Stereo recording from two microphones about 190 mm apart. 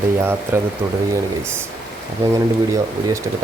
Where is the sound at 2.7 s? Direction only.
15° right (ahead or behind).